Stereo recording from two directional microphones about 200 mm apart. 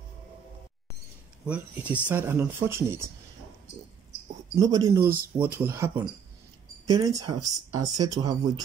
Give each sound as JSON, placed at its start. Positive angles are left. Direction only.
{"t": 1.4, "sound": "speech", "side_deg": -5}
{"t": 4.6, "sound": "speech", "side_deg": -20}